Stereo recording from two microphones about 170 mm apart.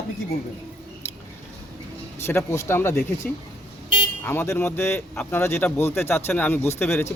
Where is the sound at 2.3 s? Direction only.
15° left (ahead or behind).